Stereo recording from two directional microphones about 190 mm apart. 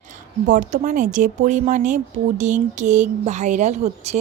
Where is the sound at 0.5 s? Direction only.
40° right (ahead or behind).